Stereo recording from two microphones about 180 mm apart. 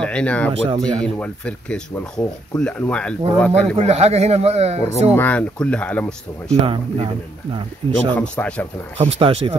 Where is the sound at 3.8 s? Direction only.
35° right (ahead or behind).